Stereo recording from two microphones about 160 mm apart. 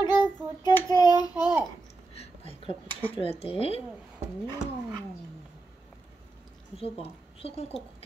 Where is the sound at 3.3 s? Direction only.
40° left (ahead or behind).